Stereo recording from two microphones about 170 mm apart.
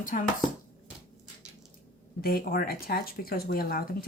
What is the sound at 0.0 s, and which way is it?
Chopping, 55° left (ahead or behind).